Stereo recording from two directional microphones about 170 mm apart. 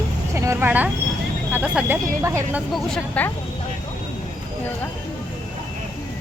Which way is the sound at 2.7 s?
5° left (ahead or behind).